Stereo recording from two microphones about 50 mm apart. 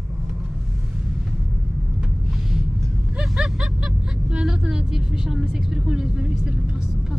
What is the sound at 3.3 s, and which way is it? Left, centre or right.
Speech, centre.